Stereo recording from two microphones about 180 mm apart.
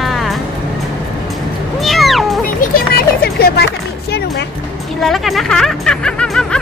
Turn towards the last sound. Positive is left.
turn(degrees=5)  # may be behind; listen again after turning